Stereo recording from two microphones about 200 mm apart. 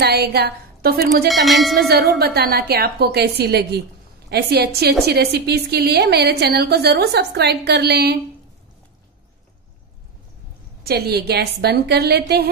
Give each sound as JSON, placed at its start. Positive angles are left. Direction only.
{"t": 0.0, "sound": "a woman's voice", "side_deg": -55}
{"t": 1.3, "sound": "speech", "side_deg": 0}
{"t": 1.8, "sound": "a woman's voice", "side_deg": -50}
{"t": 10.8, "sound": "a woman's voice", "side_deg": -50}